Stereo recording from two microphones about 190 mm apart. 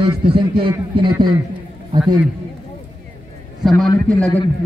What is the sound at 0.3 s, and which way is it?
A man's voice, 25° right (ahead or behind).